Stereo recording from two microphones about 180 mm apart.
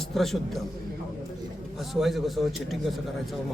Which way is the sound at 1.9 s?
Centre (ahead or behind).